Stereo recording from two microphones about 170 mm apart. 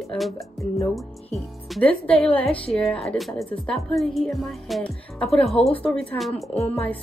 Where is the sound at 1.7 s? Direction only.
5° left (ahead or behind).